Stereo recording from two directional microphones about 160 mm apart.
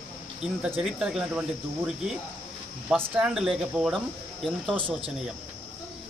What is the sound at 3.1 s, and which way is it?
Speech, 5° right (ahead or behind).